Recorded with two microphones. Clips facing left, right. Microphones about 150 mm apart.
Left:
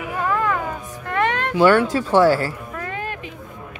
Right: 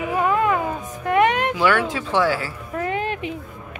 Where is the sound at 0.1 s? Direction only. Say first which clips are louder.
Right 2 dB; 20° right (ahead or behind).